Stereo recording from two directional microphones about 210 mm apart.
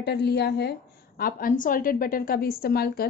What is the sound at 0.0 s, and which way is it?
A woman's voice, 50° left (ahead or behind).